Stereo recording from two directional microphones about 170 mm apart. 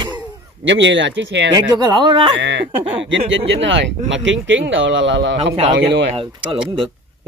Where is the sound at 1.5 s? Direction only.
25° right (ahead or behind).